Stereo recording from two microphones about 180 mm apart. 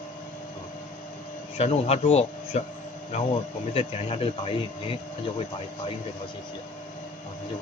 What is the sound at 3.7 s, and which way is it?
Speech, 30° left (ahead or behind).